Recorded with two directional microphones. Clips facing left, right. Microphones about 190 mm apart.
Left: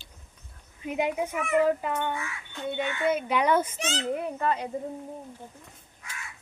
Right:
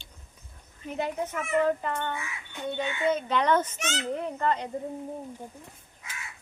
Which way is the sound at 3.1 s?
10° left (ahead or behind).